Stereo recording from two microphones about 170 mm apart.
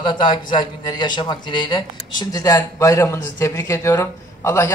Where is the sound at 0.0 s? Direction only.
25° left (ahead or behind).